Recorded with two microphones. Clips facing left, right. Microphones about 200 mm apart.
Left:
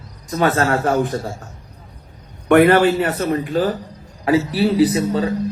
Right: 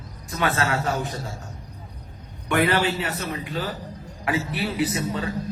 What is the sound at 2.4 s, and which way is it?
A man's voice, 55° left (ahead or behind).